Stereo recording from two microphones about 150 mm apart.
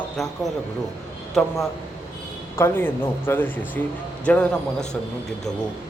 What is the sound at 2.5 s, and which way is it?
A man's voice, 15° left (ahead or behind).